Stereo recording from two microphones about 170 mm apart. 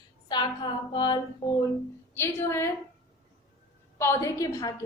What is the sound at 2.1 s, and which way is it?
Speech, 15° left (ahead or behind).